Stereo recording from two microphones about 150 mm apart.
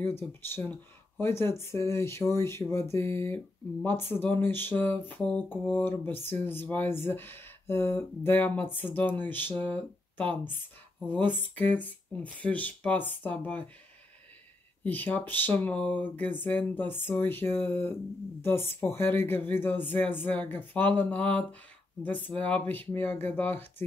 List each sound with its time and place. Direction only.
0.0 s speech: 15° left (ahead or behind)
14.8 s speech: 10° left (ahead or behind)